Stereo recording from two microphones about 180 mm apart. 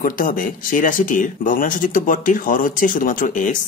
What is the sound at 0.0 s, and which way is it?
Speech, 50° left (ahead or behind).